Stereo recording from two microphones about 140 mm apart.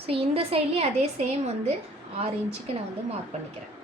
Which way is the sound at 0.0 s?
45° right (ahead or behind).